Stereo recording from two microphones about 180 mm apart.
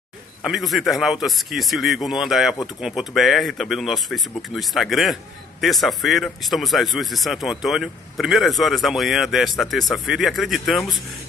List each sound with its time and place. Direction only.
0.5 s speech: centre (ahead or behind)